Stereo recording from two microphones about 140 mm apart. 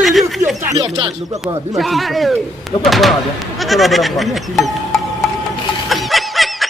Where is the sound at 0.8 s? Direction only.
30° right (ahead or behind).